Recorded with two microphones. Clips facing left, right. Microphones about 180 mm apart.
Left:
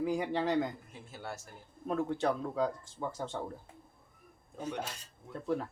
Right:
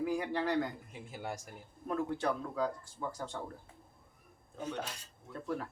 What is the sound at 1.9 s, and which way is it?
Speech, 20° left (ahead or behind).